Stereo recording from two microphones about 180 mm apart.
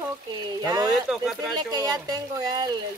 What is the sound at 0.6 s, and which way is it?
Speech, 20° right (ahead or behind).